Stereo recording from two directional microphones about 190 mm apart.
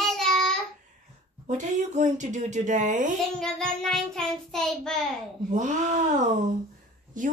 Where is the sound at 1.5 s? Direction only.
40° right (ahead or behind).